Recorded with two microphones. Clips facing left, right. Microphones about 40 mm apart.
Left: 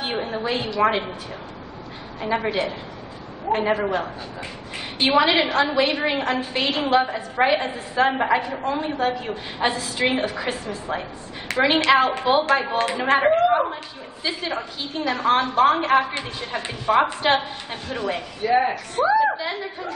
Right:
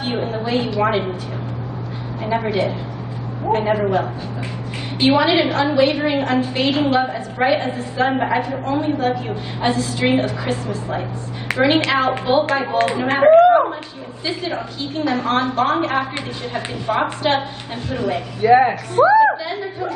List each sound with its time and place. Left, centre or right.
0.0 s a woman's voice: centre
2.2 s a woman's voice: centre
3.7 s a woman's voice: centre
11.5 s a woman's voice: centre
12.3 s a woman's voice: centre
18.4 s speech: right
18.7 s a woman's voice: centre
19.3 s speech: centre